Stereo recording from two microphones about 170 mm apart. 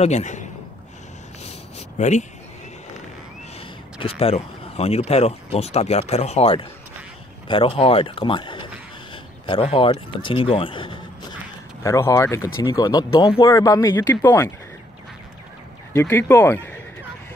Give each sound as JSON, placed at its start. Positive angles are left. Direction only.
{"t": 0.0, "sound": "a man's voice", "side_deg": 45}
{"t": 1.4, "sound": "a sound", "side_deg": 40}
{"t": 3.5, "sound": "speech", "side_deg": 35}
{"t": 11.8, "sound": "speech", "side_deg": 15}
{"t": 15.9, "sound": "speech", "side_deg": 15}